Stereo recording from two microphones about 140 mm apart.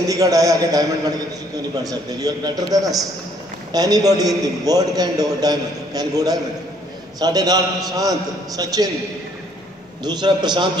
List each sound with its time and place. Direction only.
0.1 s a man's voice: 25° right (ahead or behind)
1.9 s a man's voice: 25° right (ahead or behind)
10.0 s a man's voice: 30° right (ahead or behind)